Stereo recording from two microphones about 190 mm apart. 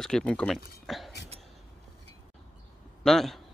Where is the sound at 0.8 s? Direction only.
Centre (ahead or behind).